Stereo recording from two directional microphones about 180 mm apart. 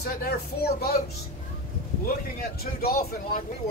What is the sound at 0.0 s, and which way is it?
Speech, 60° left (ahead or behind).